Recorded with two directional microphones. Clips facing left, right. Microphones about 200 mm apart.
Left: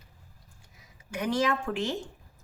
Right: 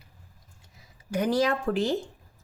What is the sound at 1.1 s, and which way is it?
Speech, 35° right (ahead or behind).